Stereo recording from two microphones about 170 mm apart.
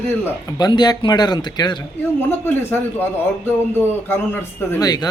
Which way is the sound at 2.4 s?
15° left (ahead or behind).